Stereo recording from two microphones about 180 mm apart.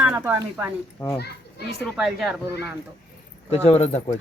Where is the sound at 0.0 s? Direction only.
10° right (ahead or behind).